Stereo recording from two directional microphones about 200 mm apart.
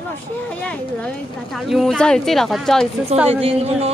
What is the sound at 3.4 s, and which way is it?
Speech, 30° right (ahead or behind).